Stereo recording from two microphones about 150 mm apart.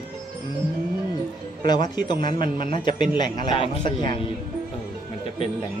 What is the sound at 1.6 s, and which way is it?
A man's voice, 30° left (ahead or behind).